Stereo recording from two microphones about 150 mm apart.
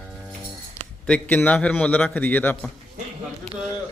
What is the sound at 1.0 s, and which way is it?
A man's voice, 5° left (ahead or behind).